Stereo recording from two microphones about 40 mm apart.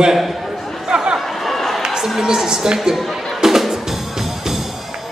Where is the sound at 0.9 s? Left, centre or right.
Centre.